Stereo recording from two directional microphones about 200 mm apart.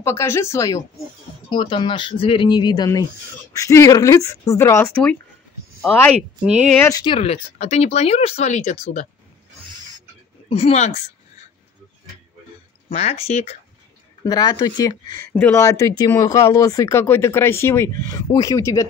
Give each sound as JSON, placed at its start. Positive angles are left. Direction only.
{"t": 0.0, "sound": "speech", "side_deg": 15}
{"t": 6.8, "sound": "speech", "side_deg": 20}
{"t": 10.5, "sound": "speech", "side_deg": 30}
{"t": 12.9, "sound": "speech", "side_deg": 35}
{"t": 14.2, "sound": "speech", "side_deg": 20}